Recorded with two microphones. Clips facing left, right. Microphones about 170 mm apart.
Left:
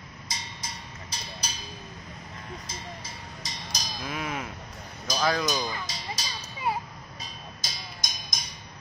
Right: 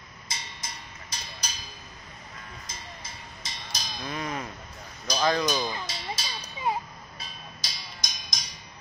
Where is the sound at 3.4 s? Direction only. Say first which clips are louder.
Left 1 dB; 40° left (ahead or behind).